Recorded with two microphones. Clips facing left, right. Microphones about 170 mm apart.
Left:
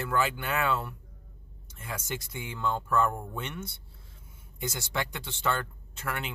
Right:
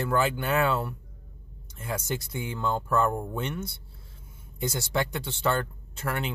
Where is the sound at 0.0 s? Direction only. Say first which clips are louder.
Right 3 dB; 35° right (ahead or behind).